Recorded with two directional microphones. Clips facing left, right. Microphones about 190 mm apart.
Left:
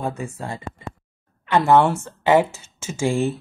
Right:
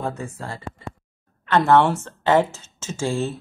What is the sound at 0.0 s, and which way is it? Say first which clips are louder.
A woman's voice: left 1 dB; 15° left (ahead or behind).